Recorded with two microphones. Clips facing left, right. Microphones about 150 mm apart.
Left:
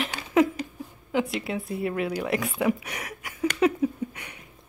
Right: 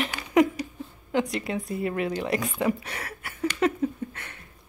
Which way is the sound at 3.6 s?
10° left (ahead or behind).